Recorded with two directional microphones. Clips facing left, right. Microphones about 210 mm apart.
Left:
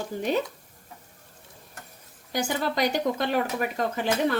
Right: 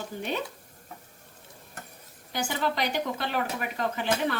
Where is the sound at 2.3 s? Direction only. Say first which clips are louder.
Left 2 dB; 40° left (ahead or behind).